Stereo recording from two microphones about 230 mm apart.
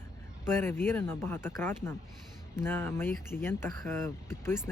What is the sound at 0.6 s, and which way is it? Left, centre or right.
Speech, centre.